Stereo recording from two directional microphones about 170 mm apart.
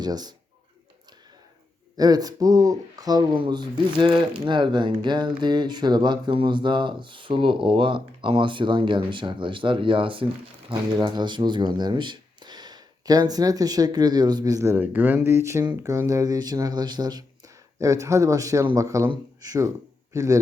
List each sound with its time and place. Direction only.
0.0 s speech: 25° right (ahead or behind)
2.0 s speech: 20° right (ahead or behind)